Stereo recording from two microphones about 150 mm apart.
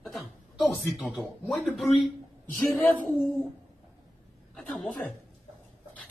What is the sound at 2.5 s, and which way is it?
Speech, 20° left (ahead or behind).